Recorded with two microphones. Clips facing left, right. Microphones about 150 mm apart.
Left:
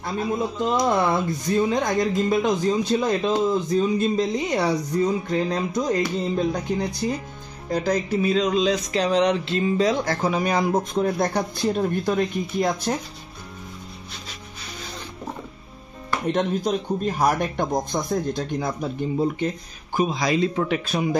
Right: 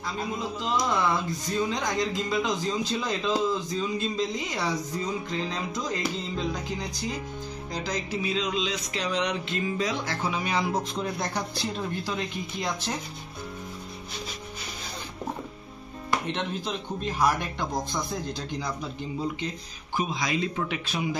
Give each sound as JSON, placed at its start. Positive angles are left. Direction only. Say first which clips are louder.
{"t": 0.0, "sound": "speech", "louder": "left 7 dB", "side_deg": 55}
{"t": 16.3, "sound": "speech", "louder": "left 8 dB", "side_deg": 45}